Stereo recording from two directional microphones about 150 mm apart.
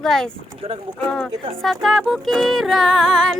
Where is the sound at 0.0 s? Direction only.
5° left (ahead or behind).